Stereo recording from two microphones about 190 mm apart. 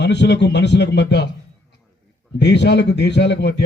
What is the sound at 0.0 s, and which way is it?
Speech, 65° left (ahead or behind).